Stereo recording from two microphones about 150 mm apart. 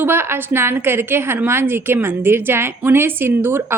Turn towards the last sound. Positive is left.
turn(degrees=-15)  # may be behind; listen again after turning